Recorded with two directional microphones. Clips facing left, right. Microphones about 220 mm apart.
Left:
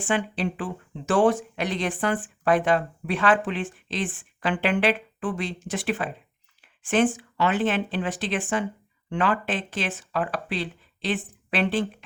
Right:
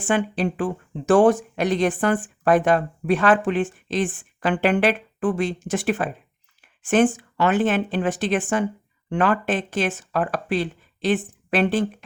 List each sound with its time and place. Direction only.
0.1 s a woman's voice: 45° right (ahead or behind)
6.6 s a sound: 45° right (ahead or behind)
7.2 s a woman's voice: 50° right (ahead or behind)